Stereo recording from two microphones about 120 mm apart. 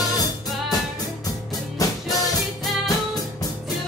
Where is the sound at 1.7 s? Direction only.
30° left (ahead or behind).